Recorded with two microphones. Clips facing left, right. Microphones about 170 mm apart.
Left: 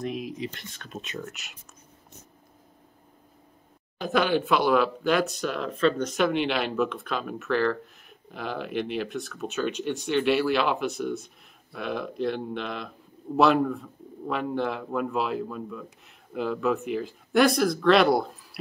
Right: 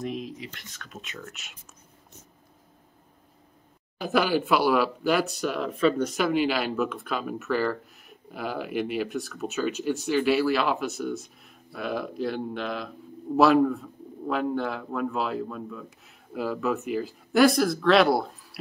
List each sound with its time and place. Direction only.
0.0 s speech: centre (ahead or behind)
0.3 s speech: 25° left (ahead or behind)
1.2 s speech: centre (ahead or behind)
4.0 s speech: 5° right (ahead or behind)